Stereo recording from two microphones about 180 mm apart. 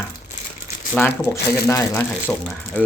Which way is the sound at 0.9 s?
10° left (ahead or behind).